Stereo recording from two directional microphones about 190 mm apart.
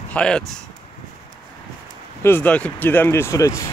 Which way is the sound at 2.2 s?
10° left (ahead or behind).